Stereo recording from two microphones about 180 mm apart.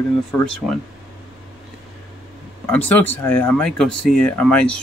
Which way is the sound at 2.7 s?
10° left (ahead or behind).